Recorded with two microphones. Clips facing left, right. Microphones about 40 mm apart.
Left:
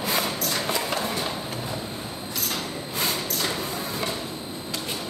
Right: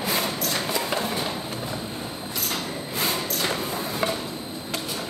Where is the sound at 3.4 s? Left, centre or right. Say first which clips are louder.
Right 2 dB; centre.